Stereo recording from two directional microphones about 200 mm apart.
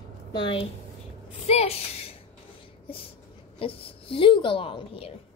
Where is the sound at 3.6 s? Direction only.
25° left (ahead or behind).